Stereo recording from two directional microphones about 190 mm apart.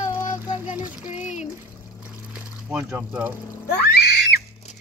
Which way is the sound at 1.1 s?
40° left (ahead or behind).